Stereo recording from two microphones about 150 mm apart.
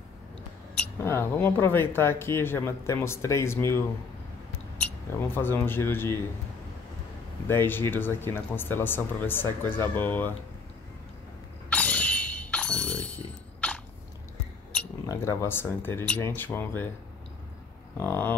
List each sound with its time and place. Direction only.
0.7 s speech: 15° left (ahead or behind)
7.4 s speech: 15° left (ahead or behind)
11.7 s shatter: 10° left (ahead or behind)
15.0 s speech: 15° left (ahead or behind)
17.9 s speech: 15° left (ahead or behind)